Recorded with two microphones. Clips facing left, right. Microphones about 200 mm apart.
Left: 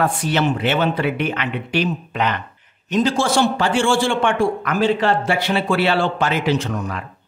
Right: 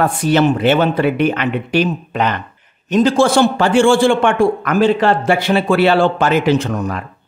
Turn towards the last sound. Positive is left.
turn(degrees=-50)  # may be behind; listen again after turning